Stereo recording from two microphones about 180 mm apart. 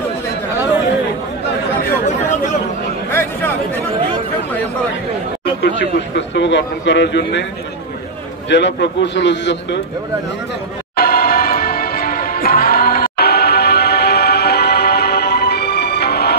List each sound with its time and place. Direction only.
3.1 s chatter: 10° left (ahead or behind)
5.6 s a sound: 75° left (ahead or behind)
8.5 s a man's voice: 80° left
11.0 s music: 55° left (ahead or behind)